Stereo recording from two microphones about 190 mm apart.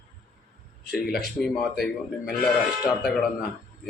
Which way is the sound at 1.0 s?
55° left (ahead or behind).